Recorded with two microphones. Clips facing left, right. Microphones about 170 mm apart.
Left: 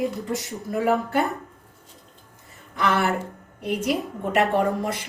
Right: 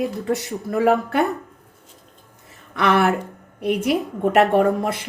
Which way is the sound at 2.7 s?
70° right (ahead or behind).